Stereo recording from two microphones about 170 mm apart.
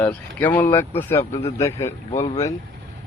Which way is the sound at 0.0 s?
10° left (ahead or behind).